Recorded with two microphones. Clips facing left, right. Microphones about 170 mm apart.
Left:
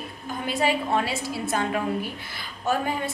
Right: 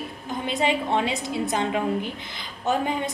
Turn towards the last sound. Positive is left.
turn(degrees=-20)  # may be behind; listen again after turning